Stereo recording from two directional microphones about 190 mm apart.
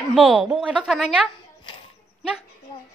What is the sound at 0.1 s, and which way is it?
A woman's voice, centre (ahead or behind).